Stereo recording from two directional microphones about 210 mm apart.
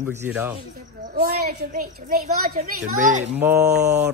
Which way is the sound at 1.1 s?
50° right (ahead or behind).